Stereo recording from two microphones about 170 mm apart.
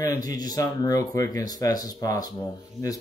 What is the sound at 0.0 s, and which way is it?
Speech, 20° left (ahead or behind).